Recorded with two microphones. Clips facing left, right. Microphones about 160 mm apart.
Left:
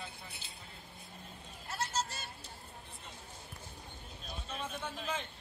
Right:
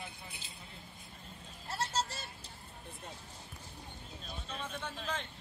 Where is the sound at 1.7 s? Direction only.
30° right (ahead or behind).